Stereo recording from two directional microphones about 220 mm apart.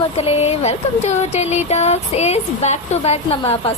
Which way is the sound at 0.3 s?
30° left (ahead or behind).